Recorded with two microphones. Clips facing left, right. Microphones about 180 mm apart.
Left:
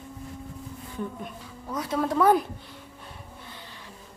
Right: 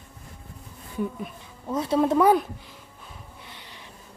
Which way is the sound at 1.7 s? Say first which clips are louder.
Right 5 dB; 25° right (ahead or behind).